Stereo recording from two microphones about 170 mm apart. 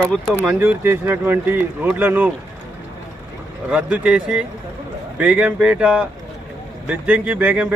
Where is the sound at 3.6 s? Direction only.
5° right (ahead or behind).